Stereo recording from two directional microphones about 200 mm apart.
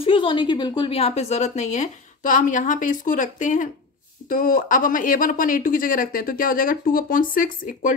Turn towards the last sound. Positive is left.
turn(degrees=45)  # may be behind; listen again after turning